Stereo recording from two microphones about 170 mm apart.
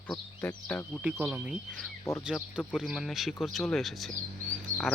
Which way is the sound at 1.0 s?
5° right (ahead or behind).